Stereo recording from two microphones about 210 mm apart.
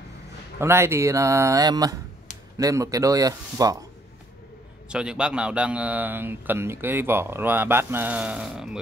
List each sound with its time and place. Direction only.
0.6 s a man's voice: 10° right (ahead or behind)
4.8 s a man's voice: 5° right (ahead or behind)